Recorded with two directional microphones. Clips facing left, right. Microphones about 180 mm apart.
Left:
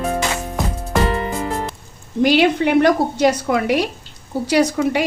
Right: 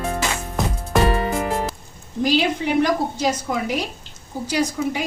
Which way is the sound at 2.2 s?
70° left (ahead or behind).